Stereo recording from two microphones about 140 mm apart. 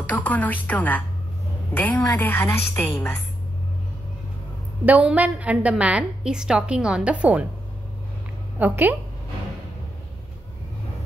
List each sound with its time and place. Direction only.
0.1 s speech: 10° left (ahead or behind)
4.8 s a woman's voice: 10° right (ahead or behind)
8.5 s a woman's voice: 10° right (ahead or behind)